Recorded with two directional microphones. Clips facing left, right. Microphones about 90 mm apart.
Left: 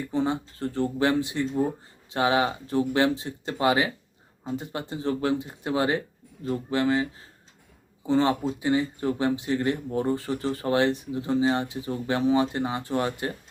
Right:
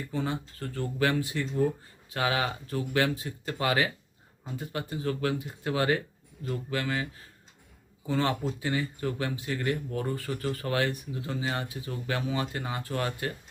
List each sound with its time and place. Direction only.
0.1 s speech: 25° left (ahead or behind)